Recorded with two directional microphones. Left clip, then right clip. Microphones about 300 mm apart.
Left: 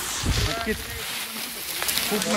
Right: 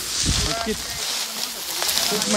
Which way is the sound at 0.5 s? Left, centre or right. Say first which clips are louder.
Right 2 dB; right.